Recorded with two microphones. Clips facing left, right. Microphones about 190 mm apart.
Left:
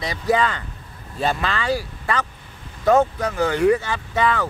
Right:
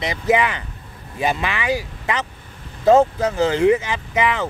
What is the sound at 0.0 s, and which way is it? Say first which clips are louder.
Speech: right 2 dB; 20° right (ahead or behind).